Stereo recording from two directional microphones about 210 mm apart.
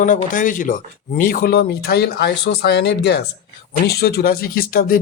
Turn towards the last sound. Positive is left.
turn(degrees=45)  # may be behind; listen again after turning